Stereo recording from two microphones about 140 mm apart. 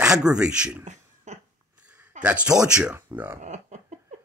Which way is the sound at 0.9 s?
55° right (ahead or behind).